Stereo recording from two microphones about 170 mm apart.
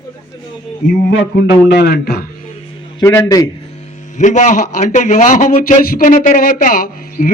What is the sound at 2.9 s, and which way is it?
Speech, 15° left (ahead or behind).